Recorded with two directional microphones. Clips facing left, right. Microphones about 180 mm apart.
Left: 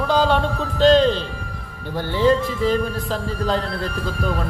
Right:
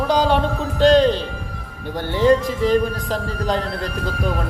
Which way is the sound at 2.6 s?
15° right (ahead or behind).